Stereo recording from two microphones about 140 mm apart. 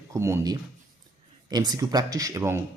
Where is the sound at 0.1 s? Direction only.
20° right (ahead or behind).